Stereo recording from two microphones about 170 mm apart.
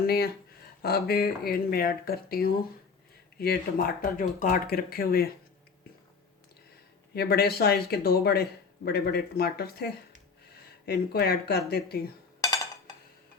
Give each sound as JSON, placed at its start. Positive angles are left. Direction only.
{"t": 0.0, "sound": "speech", "side_deg": 65}
{"t": 7.1, "sound": "speech", "side_deg": 70}